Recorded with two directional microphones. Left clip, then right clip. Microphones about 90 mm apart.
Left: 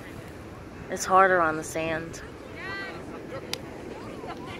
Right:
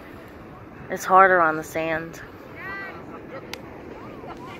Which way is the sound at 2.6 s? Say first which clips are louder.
Right 2 dB; 30° left (ahead or behind).